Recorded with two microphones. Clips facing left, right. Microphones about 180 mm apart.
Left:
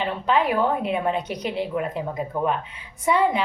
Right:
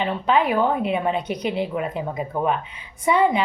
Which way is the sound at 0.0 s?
Centre (ahead or behind).